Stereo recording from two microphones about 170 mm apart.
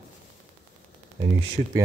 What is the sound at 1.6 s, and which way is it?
Speech, 45° right (ahead or behind).